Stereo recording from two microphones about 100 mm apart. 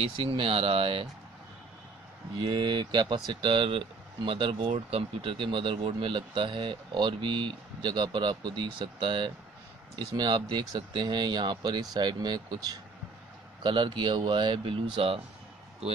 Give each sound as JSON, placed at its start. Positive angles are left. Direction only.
{"t": 0.2, "sound": "speech", "side_deg": -60}
{"t": 2.3, "sound": "speech", "side_deg": -45}
{"t": 13.6, "sound": "speech", "side_deg": -55}